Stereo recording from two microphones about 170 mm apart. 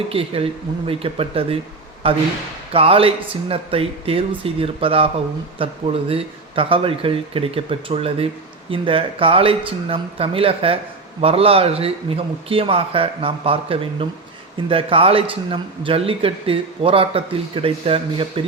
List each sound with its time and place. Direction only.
0.1 s a man's voice: 35° right (ahead or behind)